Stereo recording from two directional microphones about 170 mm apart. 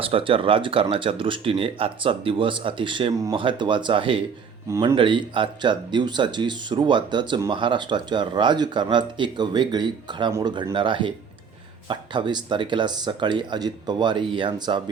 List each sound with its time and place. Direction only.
0.0 s speech: 30° right (ahead or behind)